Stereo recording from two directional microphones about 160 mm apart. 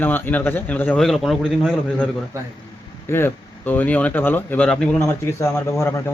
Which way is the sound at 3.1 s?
15° left (ahead or behind).